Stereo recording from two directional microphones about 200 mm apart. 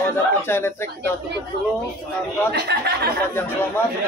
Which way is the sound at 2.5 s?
55° right (ahead or behind).